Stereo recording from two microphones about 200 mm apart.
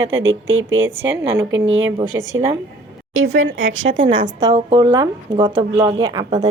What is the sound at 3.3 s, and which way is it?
Speech, 75° right (ahead or behind).